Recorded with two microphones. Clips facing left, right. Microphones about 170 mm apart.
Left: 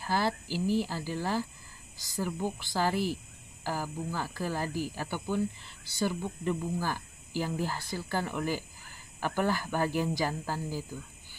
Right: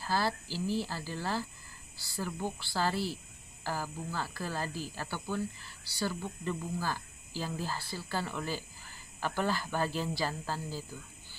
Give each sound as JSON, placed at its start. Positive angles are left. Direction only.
{"t": 0.0, "sound": "speech", "side_deg": 15}